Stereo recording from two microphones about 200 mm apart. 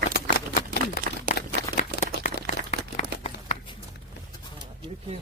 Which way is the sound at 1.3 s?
45° left (ahead or behind).